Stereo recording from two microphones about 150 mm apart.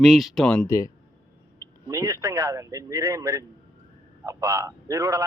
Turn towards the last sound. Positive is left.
turn(degrees=-20)  # may be behind; listen again after turning